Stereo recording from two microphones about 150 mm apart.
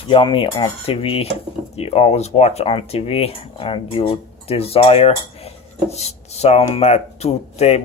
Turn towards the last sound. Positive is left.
turn(degrees=45)  # may be behind; listen again after turning